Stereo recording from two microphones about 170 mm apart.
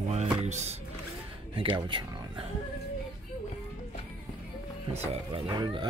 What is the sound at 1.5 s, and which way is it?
Speech, 30° right (ahead or behind).